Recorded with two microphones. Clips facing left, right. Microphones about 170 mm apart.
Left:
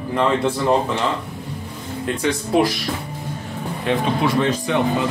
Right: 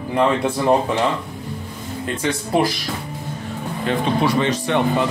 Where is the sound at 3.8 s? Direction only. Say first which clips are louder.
Even; centre (ahead or behind).